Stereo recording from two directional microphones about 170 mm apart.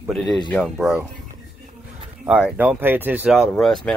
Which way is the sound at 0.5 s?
5° left (ahead or behind).